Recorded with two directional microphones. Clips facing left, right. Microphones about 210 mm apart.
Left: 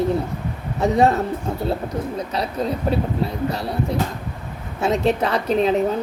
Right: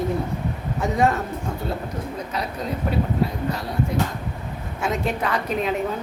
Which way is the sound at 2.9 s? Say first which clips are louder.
Left 2 dB; 30° left (ahead or behind).